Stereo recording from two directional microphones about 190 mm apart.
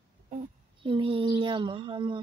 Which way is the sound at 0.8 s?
25° right (ahead or behind).